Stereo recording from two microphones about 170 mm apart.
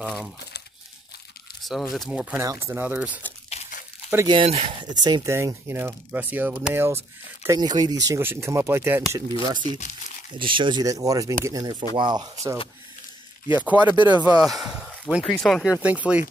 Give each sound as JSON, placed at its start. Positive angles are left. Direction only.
{"t": 0.0, "sound": "speech", "side_deg": 0}
{"t": 1.6, "sound": "speech", "side_deg": 0}
{"t": 3.4, "sound": "tearing", "side_deg": 40}
{"t": 4.3, "sound": "speech", "side_deg": -30}
{"t": 9.4, "sound": "speech", "side_deg": -30}
{"t": 13.6, "sound": "speech", "side_deg": -10}